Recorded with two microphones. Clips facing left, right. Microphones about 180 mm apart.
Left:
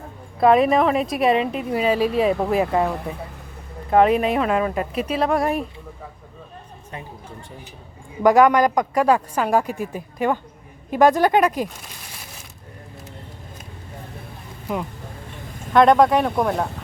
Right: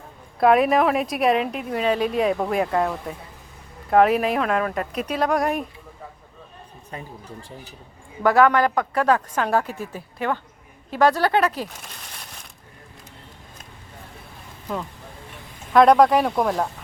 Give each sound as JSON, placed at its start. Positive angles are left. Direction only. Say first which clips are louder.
{"t": 0.3, "sound": "speech", "louder": "left 1 dB", "side_deg": 0}
{"t": 8.2, "sound": "speech", "louder": "left 3 dB", "side_deg": 15}
{"t": 11.7, "sound": "crumpling", "louder": "left 1 dB", "side_deg": 5}
{"t": 14.7, "sound": "speech", "louder": "left 3 dB", "side_deg": 15}
{"t": 15.7, "sound": "speech", "louder": "even", "side_deg": 0}